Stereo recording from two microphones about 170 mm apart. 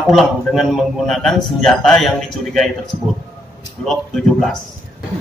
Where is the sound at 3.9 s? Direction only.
Centre (ahead or behind).